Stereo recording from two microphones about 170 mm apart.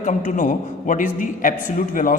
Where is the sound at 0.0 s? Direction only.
45° left (ahead or behind).